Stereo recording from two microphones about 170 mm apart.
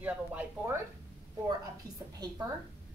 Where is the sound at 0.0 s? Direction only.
10° right (ahead or behind).